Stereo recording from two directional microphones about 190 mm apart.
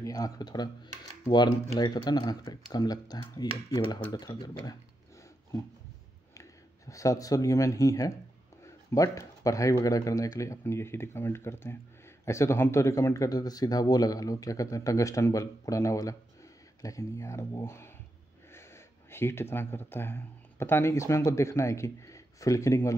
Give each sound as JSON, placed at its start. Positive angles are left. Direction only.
{"t": 0.0, "sound": "speech", "side_deg": 20}
{"t": 6.9, "sound": "speech", "side_deg": 15}